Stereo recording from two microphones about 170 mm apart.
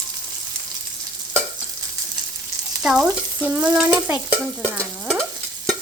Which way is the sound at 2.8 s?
5° right (ahead or behind).